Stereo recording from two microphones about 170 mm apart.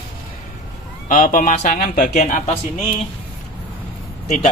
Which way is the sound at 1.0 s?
50° left (ahead or behind).